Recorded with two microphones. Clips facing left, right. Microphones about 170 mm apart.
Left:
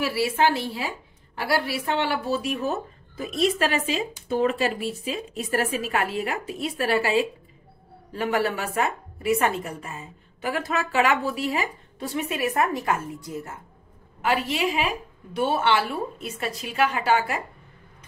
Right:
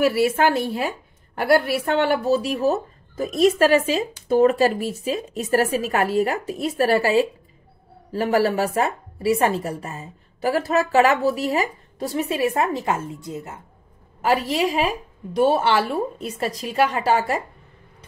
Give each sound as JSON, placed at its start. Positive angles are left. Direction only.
{"t": 0.0, "sound": "a woman's voice", "side_deg": -45}
{"t": 14.2, "sound": "a woman's voice", "side_deg": -40}